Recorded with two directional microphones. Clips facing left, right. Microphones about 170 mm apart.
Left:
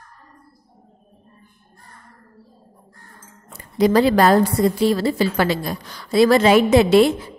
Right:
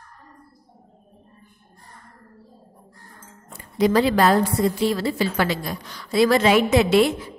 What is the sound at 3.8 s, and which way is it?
A woman's voice, 40° left (ahead or behind).